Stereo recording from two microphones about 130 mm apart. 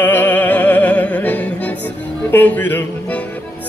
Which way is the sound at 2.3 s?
15° left (ahead or behind).